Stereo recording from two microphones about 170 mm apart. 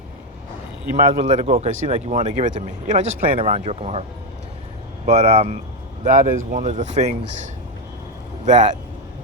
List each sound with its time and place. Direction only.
0.9 s speech: 45° right (ahead or behind)
5.0 s speech: 40° right (ahead or behind)